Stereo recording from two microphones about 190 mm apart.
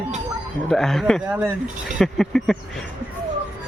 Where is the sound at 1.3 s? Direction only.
10° right (ahead or behind).